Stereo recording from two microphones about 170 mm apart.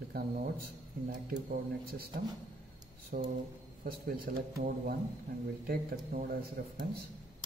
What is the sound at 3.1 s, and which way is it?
Speech, 60° right (ahead or behind).